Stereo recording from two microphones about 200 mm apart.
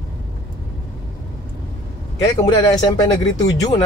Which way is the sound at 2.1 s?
20° left (ahead or behind).